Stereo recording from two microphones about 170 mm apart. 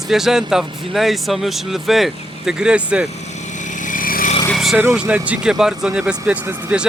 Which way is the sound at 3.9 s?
55° left (ahead or behind).